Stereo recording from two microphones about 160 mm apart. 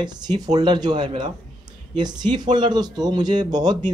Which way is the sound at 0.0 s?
25° right (ahead or behind).